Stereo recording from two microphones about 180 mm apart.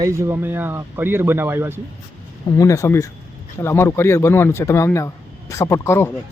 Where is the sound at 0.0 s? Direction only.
15° right (ahead or behind).